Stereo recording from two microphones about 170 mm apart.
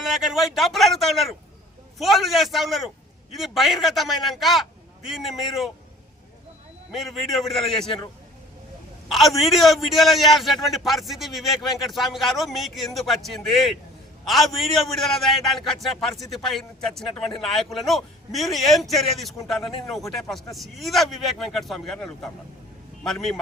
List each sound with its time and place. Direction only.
0.0 s a man's voice: centre (ahead or behind)
6.9 s a man's voice: centre (ahead or behind)
9.1 s a man's voice: centre (ahead or behind)